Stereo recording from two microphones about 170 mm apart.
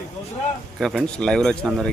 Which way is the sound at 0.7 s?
Centre (ahead or behind).